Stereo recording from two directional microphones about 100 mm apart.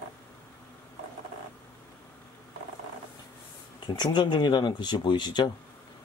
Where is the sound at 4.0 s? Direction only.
50° left (ahead or behind).